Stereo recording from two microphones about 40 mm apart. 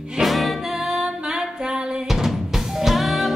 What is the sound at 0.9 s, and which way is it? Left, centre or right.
Music, centre.